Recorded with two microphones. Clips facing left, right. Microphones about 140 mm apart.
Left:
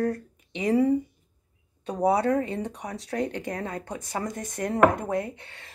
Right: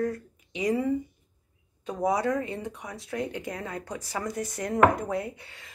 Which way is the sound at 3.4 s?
30° left (ahead or behind).